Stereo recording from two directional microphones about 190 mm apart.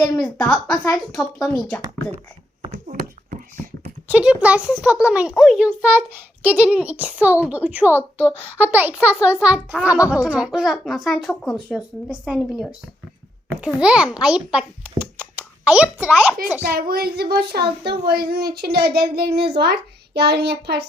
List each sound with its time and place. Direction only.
0.2 s speech: 5° left (ahead or behind)
2.7 s a sound: 40° right (ahead or behind)
4.1 s a child's voice: 5° right (ahead or behind)
16.6 s speech: 55° right (ahead or behind)